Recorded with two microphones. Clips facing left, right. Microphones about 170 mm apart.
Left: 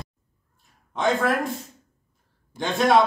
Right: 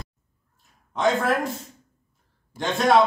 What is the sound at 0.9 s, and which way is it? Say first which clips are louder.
Speech: even; centre (ahead or behind).